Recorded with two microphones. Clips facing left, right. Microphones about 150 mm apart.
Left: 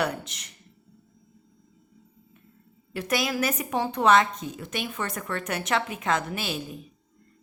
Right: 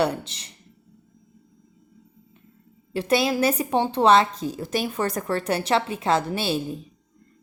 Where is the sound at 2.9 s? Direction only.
30° right (ahead or behind).